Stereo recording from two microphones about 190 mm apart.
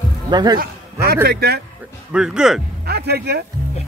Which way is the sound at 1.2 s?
55° right (ahead or behind).